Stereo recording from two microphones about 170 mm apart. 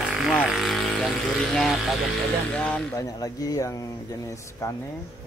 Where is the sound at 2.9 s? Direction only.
20° left (ahead or behind).